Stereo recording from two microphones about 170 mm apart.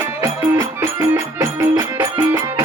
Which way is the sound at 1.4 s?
20° right (ahead or behind).